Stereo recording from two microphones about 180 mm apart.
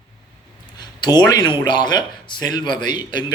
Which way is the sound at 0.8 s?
25° left (ahead or behind).